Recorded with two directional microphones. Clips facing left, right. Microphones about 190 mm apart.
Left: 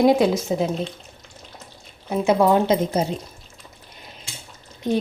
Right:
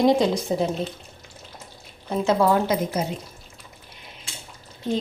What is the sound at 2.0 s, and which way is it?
Speech, 15° left (ahead or behind).